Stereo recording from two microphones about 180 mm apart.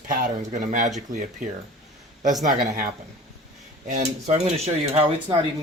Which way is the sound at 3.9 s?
35° right (ahead or behind).